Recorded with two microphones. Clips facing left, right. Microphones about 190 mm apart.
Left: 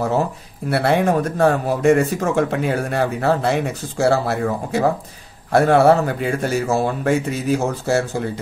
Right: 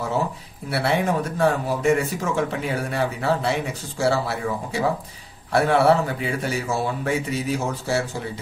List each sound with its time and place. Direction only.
0.7 s speech: 50° left (ahead or behind)